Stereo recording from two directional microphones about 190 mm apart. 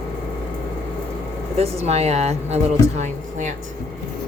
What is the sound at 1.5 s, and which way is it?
Speech, 30° right (ahead or behind).